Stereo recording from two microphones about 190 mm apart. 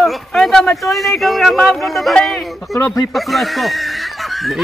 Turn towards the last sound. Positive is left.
turn(degrees=0)  # may be behind; listen again after turning